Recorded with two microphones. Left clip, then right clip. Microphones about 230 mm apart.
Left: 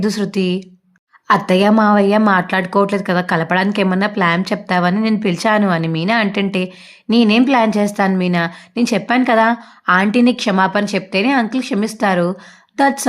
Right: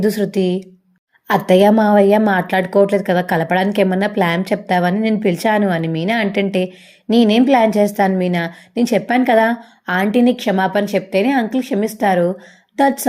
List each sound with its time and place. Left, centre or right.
1.3 s a woman's voice: centre
7.1 s a woman's voice: left
7.4 s a woman's voice: centre